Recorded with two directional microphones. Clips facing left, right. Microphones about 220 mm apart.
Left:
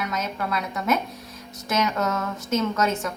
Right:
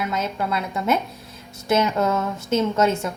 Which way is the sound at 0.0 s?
30° right (ahead or behind).